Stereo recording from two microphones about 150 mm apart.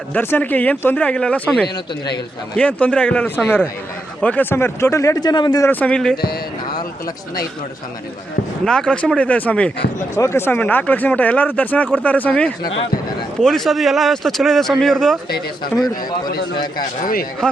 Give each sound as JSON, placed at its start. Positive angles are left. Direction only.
{"t": 0.1, "sound": "speech", "side_deg": 15}
{"t": 5.8, "sound": "speech", "side_deg": 5}
{"t": 8.6, "sound": "speech", "side_deg": 5}
{"t": 17.0, "sound": "speech", "side_deg": 70}